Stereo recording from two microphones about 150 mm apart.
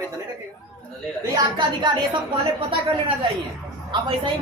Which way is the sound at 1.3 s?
30° right (ahead or behind).